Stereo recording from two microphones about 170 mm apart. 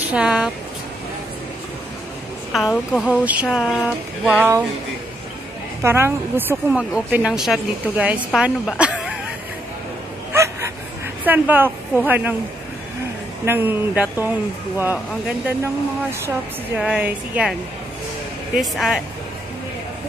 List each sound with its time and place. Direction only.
0.1 s a woman's voice: 5° right (ahead or behind)
2.5 s a woman's voice: centre (ahead or behind)
5.8 s speech: 15° right (ahead or behind)
10.3 s a sound: 15° right (ahead or behind)
11.2 s speech: 10° right (ahead or behind)
13.5 s a woman's voice: 10° right (ahead or behind)